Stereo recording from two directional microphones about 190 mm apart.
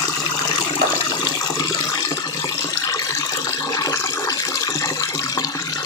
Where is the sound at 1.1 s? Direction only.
20° left (ahead or behind).